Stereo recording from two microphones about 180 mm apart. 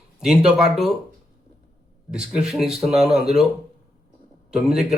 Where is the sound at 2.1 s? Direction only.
5° right (ahead or behind).